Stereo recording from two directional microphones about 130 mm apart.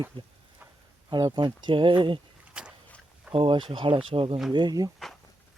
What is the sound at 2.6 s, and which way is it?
Boat, 5° right (ahead or behind).